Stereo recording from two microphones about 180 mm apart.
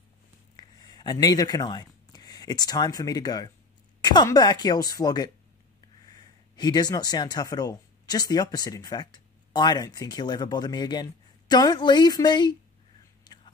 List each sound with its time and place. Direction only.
0.6 s speech: 20° left (ahead or behind)
13.2 s whispering: 25° left (ahead or behind)